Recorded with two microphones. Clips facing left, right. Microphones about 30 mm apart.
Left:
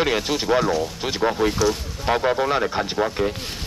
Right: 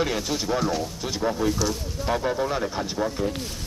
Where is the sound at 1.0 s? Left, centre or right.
Left.